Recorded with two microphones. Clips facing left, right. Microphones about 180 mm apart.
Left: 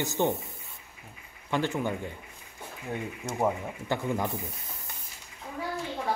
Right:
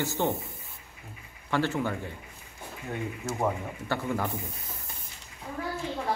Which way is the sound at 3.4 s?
15° left (ahead or behind).